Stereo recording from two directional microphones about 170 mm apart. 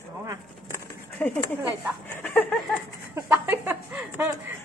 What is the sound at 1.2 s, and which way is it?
Speech, 5° left (ahead or behind).